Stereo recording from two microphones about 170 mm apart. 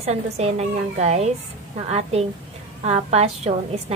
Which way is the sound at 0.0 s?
40° right (ahead or behind).